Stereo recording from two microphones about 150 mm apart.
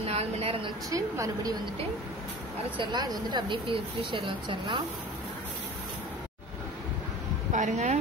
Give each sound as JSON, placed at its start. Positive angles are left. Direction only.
{"t": 0.0, "sound": "a sound", "side_deg": -45}
{"t": 0.8, "sound": "a woman's voice", "side_deg": -20}
{"t": 2.8, "sound": "speech", "side_deg": -30}
{"t": 7.5, "sound": "speech", "side_deg": -55}